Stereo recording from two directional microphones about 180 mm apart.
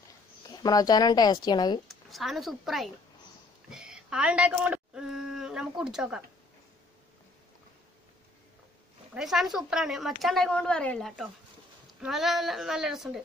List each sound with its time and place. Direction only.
0.5 s speech: 20° left (ahead or behind)
2.0 s speech: centre (ahead or behind)
3.7 s a sound: 5° right (ahead or behind)
9.1 s speech: centre (ahead or behind)